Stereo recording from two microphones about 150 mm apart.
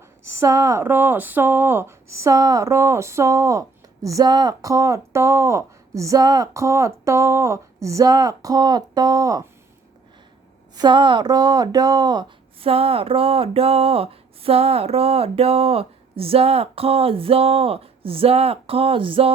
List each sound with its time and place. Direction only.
0.3 s speech: 20° right (ahead or behind)
10.8 s speech: 30° right (ahead or behind)